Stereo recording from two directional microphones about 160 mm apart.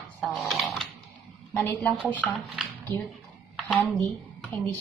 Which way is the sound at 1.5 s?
10° left (ahead or behind).